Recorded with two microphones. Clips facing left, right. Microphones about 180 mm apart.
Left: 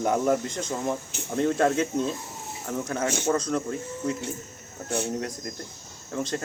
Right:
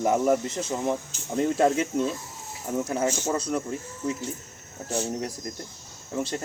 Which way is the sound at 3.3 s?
5° right (ahead or behind).